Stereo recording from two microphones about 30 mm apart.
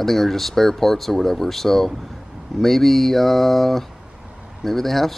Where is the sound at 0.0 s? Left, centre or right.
Centre.